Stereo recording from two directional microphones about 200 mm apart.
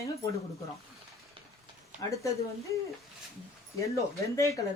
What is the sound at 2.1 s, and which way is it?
Speech, 15° left (ahead or behind).